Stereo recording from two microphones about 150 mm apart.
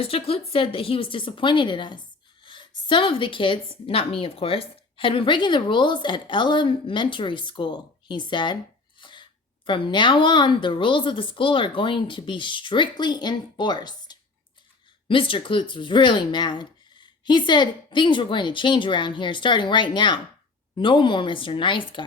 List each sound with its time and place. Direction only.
0.0 s a woman's voice: 40° left (ahead or behind)
9.0 s a sound: 30° left (ahead or behind)
9.6 s a woman's voice: 35° left (ahead or behind)